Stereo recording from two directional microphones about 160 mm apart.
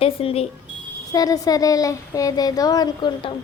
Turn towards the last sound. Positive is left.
turn(degrees=30)  # may be behind; listen again after turning